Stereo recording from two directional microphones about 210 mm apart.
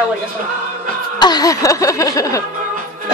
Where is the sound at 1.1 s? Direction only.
20° left (ahead or behind).